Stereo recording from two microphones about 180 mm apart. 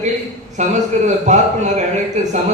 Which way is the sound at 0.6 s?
40° right (ahead or behind).